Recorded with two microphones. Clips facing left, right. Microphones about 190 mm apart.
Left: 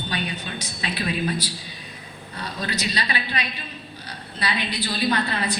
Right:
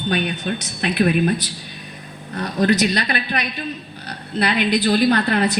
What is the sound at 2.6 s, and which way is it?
Speech, 70° right (ahead or behind).